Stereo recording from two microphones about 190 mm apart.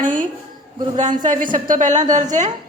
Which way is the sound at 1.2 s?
45° right (ahead or behind).